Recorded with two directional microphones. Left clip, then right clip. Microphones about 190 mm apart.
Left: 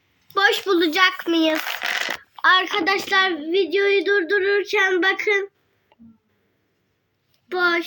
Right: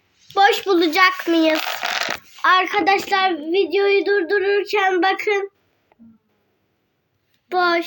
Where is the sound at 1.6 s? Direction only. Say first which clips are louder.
Right 2 dB; 35° right (ahead or behind).